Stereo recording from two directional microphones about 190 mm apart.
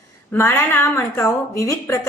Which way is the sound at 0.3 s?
10° left (ahead or behind).